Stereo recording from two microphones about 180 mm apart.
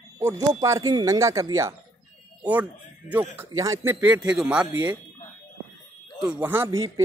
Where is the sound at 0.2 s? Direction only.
15° right (ahead or behind).